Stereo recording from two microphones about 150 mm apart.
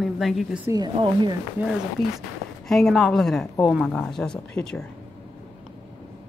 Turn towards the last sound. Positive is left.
turn(degrees=5)  # may be behind; listen again after turning